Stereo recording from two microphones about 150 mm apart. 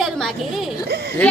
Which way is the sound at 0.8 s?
90° right.